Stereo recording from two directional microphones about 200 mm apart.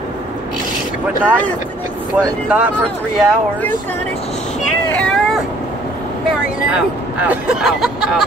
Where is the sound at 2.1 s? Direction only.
5° right (ahead or behind).